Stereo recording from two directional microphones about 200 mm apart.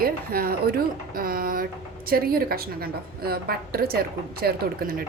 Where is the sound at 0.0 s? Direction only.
50° right (ahead or behind).